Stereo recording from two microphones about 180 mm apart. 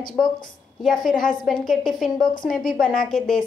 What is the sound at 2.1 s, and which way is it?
Speech, 50° left (ahead or behind).